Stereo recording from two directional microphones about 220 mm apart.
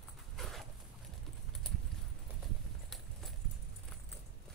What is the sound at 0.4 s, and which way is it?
Dog, centre (ahead or behind).